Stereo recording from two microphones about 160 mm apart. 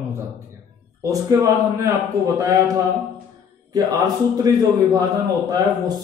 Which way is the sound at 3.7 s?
25° right (ahead or behind).